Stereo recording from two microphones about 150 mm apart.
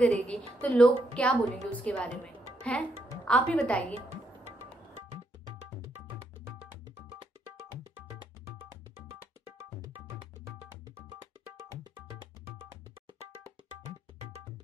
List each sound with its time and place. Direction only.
0.0 s a woman's voice: 5° left (ahead or behind)
3.9 s music: 45° right (ahead or behind)